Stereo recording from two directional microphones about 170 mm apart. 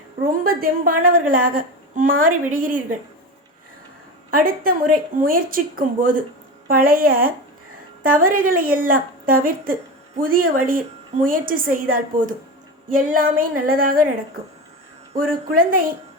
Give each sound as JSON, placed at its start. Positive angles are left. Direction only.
{"t": 0.4, "sound": "a woman's voice", "side_deg": -60}
{"t": 4.3, "sound": "a woman's voice", "side_deg": -60}
{"t": 15.5, "sound": "a woman's voice", "side_deg": -55}